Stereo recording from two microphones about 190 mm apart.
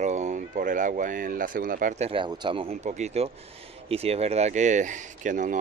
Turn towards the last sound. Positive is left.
turn(degrees=-40)  # may be behind; listen again after turning